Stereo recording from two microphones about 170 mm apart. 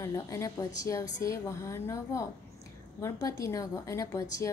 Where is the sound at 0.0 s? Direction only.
15° left (ahead or behind).